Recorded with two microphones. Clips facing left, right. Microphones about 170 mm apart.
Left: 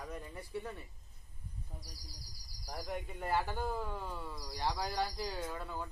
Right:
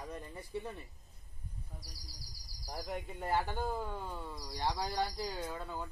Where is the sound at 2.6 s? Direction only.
5° right (ahead or behind).